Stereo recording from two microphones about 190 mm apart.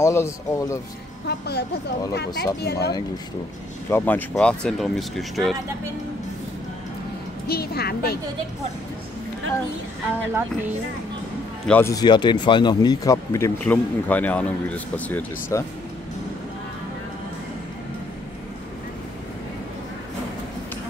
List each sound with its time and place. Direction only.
0.0 s speech: 15° left (ahead or behind)
2.1 s speech: 60° left (ahead or behind)
3.9 s speech: 10° left (ahead or behind)
7.4 s a woman's voice: 55° left (ahead or behind)
11.6 s speech: 10° left (ahead or behind)